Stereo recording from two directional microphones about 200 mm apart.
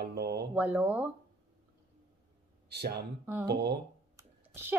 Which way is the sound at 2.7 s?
55° right (ahead or behind).